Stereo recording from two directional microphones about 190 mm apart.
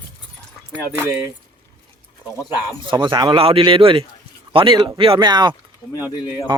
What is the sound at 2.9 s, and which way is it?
Speech, 25° right (ahead or behind).